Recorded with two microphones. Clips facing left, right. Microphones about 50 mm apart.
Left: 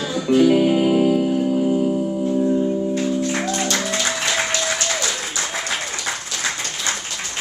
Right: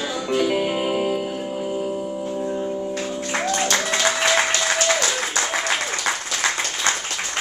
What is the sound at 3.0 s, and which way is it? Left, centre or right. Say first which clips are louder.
Music: left 4 dB; right.